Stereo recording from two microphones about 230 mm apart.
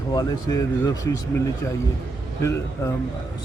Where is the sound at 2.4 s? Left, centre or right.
Centre.